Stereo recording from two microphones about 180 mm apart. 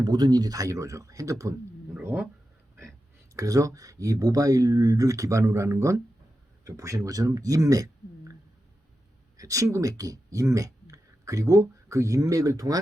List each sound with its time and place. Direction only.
0.0 s speech: 25° right (ahead or behind)
3.3 s speech: 20° right (ahead or behind)
9.4 s speech: 20° right (ahead or behind)